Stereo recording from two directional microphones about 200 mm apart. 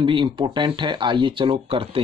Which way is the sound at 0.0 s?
25° right (ahead or behind).